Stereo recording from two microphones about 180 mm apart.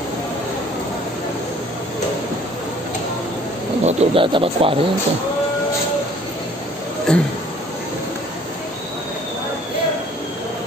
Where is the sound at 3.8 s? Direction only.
35° right (ahead or behind).